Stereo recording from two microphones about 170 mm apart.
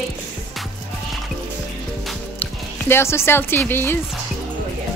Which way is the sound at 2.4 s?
15° left (ahead or behind).